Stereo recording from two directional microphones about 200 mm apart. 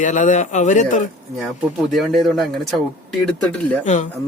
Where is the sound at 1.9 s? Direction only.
Centre (ahead or behind).